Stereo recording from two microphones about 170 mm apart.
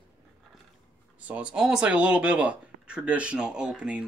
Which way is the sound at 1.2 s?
5° right (ahead or behind).